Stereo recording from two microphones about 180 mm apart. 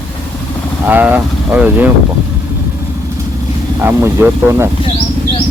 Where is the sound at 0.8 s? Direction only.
10° right (ahead or behind).